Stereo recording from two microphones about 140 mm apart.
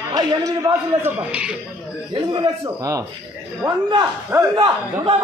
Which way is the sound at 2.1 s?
35° right (ahead or behind).